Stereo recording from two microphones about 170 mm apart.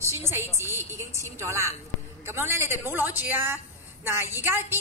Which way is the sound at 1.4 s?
15° right (ahead or behind).